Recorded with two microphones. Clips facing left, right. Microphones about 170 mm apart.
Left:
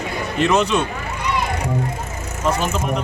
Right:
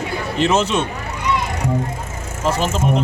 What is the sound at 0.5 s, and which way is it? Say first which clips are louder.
Speech: left 2 dB; centre (ahead or behind).